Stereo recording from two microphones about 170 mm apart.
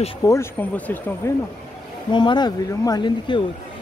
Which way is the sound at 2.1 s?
25° left (ahead or behind).